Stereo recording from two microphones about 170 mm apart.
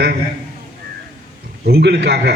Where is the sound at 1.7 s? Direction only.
75° right (ahead or behind).